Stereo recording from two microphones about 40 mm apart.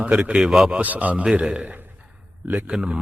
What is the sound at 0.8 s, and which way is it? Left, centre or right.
Speech, right.